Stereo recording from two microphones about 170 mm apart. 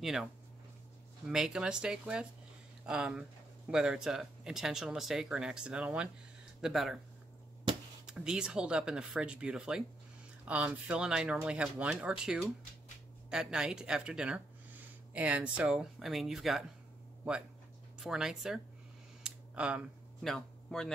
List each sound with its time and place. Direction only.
0.0 s speech: centre (ahead or behind)
1.3 s speech: 5° right (ahead or behind)
8.1 s speech: 5° right (ahead or behind)
17.9 s speech: 5° right (ahead or behind)
19.2 s a sound: 5° right (ahead or behind)